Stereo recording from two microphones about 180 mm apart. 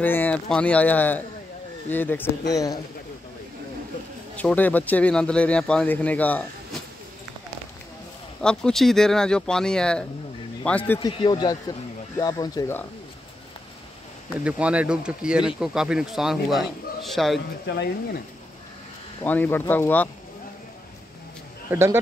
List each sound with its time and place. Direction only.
0.0 s speech: 10° left (ahead or behind)
4.4 s speech: 10° left (ahead or behind)
8.4 s speech: 5° left (ahead or behind)
11.0 s speech: 25° left (ahead or behind)
14.4 s speech: 5° right (ahead or behind)
17.6 s speech: 70° left (ahead or behind)
19.2 s speech: 10° left (ahead or behind)
21.6 s speech: 15° right (ahead or behind)